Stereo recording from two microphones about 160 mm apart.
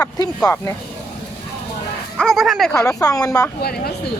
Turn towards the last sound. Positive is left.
turn(degrees=75)  # may be behind; listen again after turning